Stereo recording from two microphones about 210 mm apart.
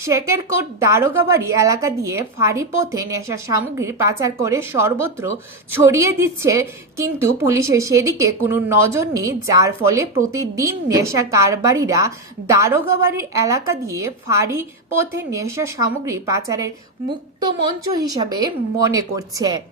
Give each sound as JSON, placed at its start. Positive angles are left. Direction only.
{"t": 0.8, "sound": "a woman's voice", "side_deg": -15}